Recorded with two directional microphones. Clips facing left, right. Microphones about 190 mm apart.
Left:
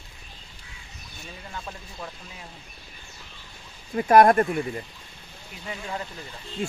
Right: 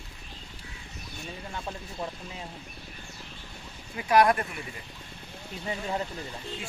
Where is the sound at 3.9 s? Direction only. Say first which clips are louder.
Left 6 dB; 50° left (ahead or behind).